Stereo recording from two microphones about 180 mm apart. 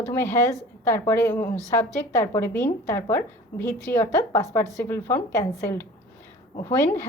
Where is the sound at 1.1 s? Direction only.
10° left (ahead or behind).